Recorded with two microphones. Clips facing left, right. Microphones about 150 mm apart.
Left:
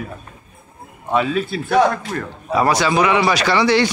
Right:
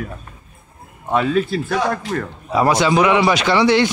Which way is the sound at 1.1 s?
5° left (ahead or behind).